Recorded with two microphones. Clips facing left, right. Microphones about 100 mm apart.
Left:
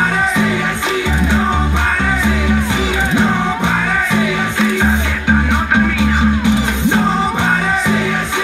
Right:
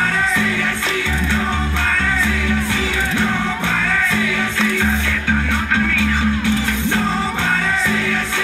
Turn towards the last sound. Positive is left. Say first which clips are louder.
# left 5 dB
turn(degrees=20)  # may be behind; listen again after turning